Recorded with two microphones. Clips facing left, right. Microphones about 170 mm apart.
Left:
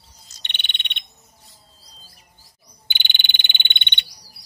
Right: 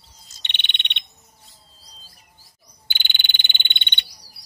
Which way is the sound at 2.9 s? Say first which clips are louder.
Left 1 dB; 20° left (ahead or behind).